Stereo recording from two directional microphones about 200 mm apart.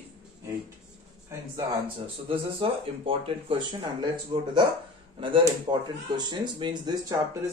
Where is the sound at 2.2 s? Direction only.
25° right (ahead or behind).